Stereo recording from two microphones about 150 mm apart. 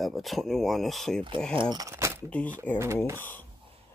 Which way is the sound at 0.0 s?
Centre (ahead or behind).